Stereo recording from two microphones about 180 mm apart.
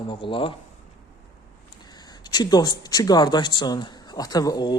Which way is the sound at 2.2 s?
20° left (ahead or behind).